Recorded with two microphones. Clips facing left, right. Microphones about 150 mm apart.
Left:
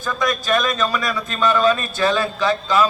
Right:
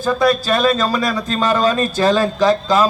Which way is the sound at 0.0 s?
35° right (ahead or behind).